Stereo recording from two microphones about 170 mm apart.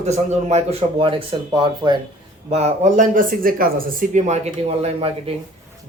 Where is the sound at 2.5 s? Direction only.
40° right (ahead or behind).